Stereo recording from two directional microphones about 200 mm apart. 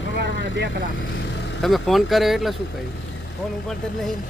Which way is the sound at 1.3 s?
60° left (ahead or behind).